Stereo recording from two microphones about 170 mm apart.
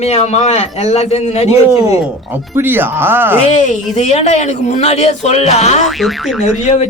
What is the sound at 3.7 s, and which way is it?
Speech, 40° left (ahead or behind).